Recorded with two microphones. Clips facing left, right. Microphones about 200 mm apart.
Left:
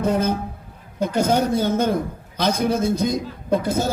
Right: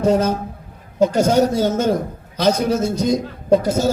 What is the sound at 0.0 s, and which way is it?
A man's voice, 55° left (ahead or behind).